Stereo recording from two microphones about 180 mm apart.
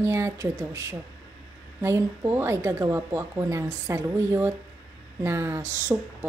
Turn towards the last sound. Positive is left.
turn(degrees=-15)  # may be behind; listen again after turning